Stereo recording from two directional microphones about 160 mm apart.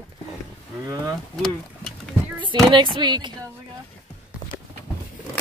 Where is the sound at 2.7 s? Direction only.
30° right (ahead or behind).